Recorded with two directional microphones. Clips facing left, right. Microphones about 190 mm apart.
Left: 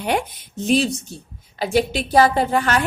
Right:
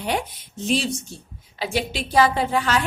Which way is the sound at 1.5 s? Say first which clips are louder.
Left 6 dB; 45° left (ahead or behind).